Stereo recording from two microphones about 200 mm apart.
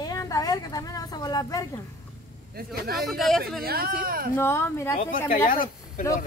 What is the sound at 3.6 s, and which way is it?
Speech, 50° right (ahead or behind).